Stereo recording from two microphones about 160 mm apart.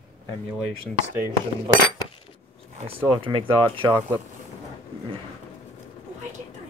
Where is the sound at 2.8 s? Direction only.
35° right (ahead or behind).